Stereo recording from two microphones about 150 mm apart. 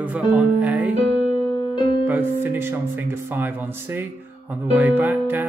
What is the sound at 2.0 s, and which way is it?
Music, 10° right (ahead or behind).